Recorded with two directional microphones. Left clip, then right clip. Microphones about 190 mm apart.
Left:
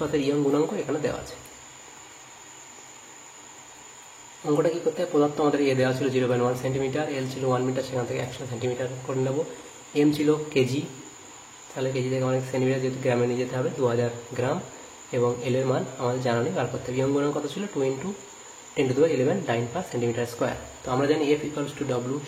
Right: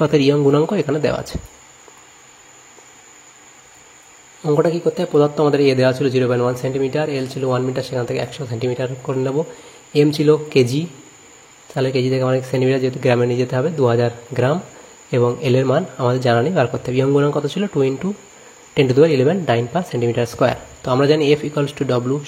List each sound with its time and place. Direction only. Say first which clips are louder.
0.0 s a man's voice: right 10 dB; 35° right (ahead or behind)
4.5 s a man's voice: right 7 dB; 35° right (ahead or behind)
11.7 s a man's voice: right 9 dB; 45° right (ahead or behind)